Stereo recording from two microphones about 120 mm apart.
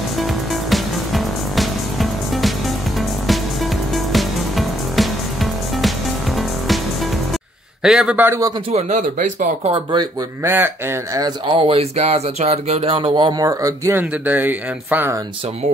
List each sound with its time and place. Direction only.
0.7 s music: centre (ahead or behind)
3.9 s music: centre (ahead or behind)
7.8 s speech: 5° right (ahead or behind)
8.3 s speech: 30° right (ahead or behind)
8.7 s speech: 90° right
10.4 s speech: 15° right (ahead or behind)
11.1 s speech: 35° right (ahead or behind)
11.5 s speech: 50° right (ahead or behind)
12.0 s speech: 65° right (ahead or behind)
13.4 s speech: 30° right (ahead or behind)
14.2 s speech: 15° right (ahead or behind)